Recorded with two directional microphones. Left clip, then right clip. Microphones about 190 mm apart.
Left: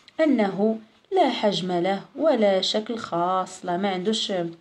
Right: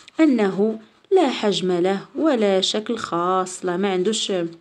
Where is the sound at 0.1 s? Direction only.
55° right (ahead or behind).